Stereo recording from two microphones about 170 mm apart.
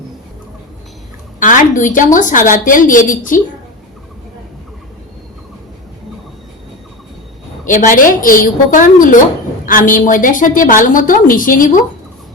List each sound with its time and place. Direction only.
1.4 s a woman's voice: 50° left (ahead or behind)
7.6 s a woman's voice: 50° left (ahead or behind)